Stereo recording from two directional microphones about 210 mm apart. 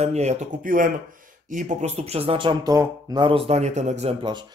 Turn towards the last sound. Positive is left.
turn(degrees=-25)  # may be behind; listen again after turning